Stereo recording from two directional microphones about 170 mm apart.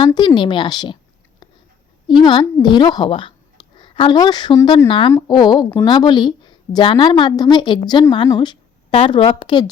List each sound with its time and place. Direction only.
0.0 s a woman's voice: 25° left (ahead or behind)
2.0 s a woman's voice: 25° left (ahead or behind)